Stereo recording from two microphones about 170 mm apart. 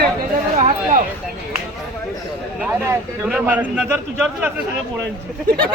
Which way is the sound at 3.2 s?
10° right (ahead or behind).